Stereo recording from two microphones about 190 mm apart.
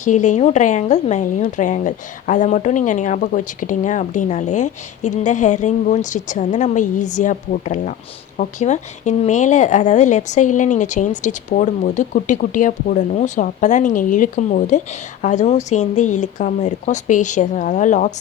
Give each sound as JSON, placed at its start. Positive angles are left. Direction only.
{"t": 0.0, "sound": "speech", "side_deg": 40}